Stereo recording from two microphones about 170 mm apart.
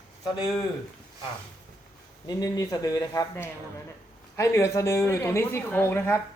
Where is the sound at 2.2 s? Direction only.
20° left (ahead or behind).